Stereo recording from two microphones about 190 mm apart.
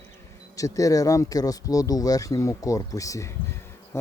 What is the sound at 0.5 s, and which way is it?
Speech, 15° left (ahead or behind).